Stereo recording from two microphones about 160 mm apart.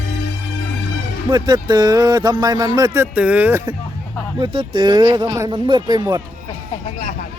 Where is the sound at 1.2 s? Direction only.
30° right (ahead or behind).